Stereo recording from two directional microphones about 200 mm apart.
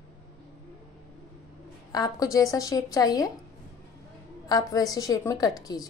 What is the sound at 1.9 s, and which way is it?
A woman's voice, 15° left (ahead or behind).